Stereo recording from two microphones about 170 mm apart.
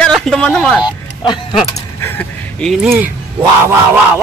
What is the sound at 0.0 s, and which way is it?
Speech, 5° left (ahead or behind).